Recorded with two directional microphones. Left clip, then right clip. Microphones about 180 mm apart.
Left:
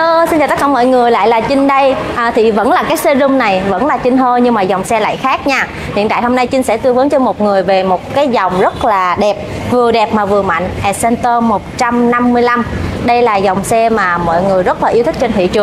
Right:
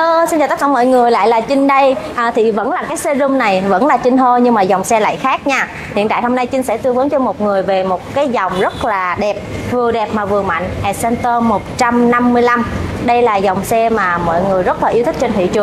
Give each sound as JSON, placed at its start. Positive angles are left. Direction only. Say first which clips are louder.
{"t": 0.0, "sound": "a woman's voice", "louder": "left 2 dB", "side_deg": 0}
{"t": 2.7, "sound": "a woman's voice", "louder": "left 6 dB", "side_deg": 20}
{"t": 3.3, "sound": "a woman's voice", "louder": "left 2 dB", "side_deg": 0}
{"t": 3.7, "sound": "a woman's voice", "louder": "right 1 dB", "side_deg": -10}
{"t": 4.2, "sound": "a woman's voice", "louder": "even", "side_deg": 0}
{"t": 11.4, "sound": "a woman's voice", "louder": "left 1 dB", "side_deg": -5}